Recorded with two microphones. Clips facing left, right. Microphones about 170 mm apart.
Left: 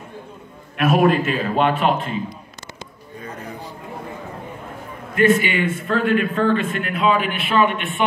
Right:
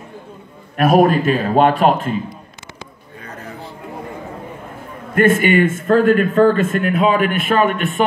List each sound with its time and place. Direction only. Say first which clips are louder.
0.7 s a man's voice: right 4 dB; 40° right (ahead or behind)
5.1 s a man's voice: right 4 dB; 50° right (ahead or behind)